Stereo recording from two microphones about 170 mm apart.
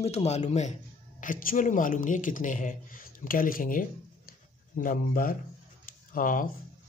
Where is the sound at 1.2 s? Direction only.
55° left (ahead or behind).